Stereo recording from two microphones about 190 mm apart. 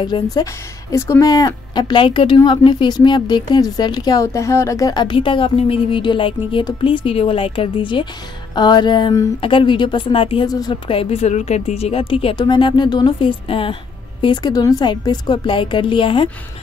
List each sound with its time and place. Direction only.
0.0 s speech: 20° left (ahead or behind)